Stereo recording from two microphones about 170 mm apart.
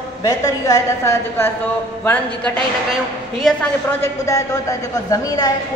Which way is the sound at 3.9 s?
20° left (ahead or behind).